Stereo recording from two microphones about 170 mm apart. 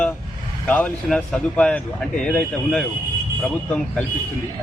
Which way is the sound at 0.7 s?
5° left (ahead or behind).